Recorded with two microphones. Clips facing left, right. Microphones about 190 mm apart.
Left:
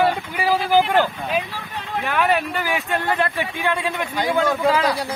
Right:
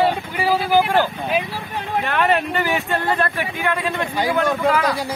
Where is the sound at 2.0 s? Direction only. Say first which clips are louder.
Even; 5° left (ahead or behind).